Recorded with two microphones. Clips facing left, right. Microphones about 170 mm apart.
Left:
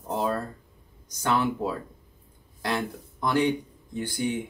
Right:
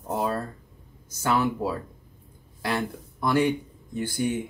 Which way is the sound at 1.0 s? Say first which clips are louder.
Right 1 dB; 5° right (ahead or behind).